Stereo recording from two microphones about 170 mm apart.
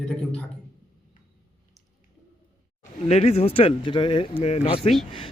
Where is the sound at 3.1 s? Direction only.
40° left (ahead or behind).